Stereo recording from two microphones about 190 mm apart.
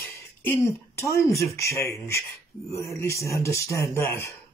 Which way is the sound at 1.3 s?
15° left (ahead or behind).